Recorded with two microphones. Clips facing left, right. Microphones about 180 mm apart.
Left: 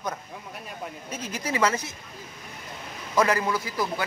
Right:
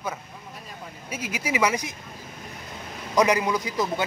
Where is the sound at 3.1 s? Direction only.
15° right (ahead or behind).